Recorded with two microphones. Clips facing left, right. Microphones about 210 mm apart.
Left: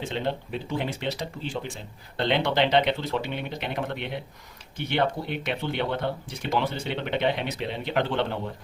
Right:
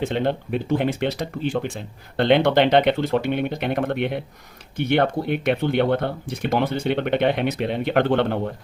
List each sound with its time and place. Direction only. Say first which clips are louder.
0.0 s speech: right 7 dB; 55° right (ahead or behind)